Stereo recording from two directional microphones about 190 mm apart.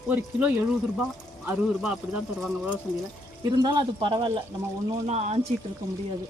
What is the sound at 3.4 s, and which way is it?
A man's voice, 25° right (ahead or behind).